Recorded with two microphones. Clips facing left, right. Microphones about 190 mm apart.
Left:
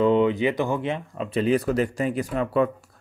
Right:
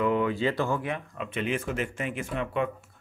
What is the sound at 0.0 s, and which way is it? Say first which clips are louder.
Speech: left 6 dB; 25° left (ahead or behind).